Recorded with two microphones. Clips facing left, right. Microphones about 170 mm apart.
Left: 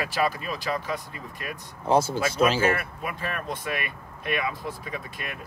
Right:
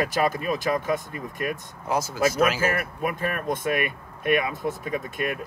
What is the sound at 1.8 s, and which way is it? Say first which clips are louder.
Speech: left 1 dB; 30° left (ahead or behind).